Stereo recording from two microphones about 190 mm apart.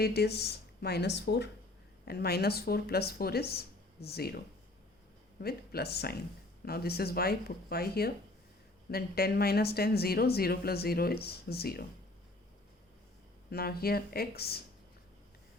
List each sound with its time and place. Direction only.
0.0 s speech: 55° left (ahead or behind)
5.4 s speech: 55° left (ahead or behind)
13.5 s speech: 55° left (ahead or behind)